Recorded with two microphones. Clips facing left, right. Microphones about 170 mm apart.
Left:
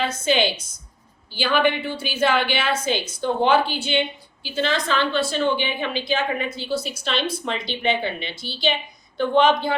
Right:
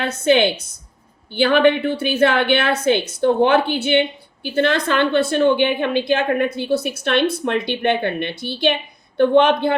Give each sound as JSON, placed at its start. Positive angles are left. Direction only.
{"t": 0.0, "sound": "a woman's voice", "side_deg": -60}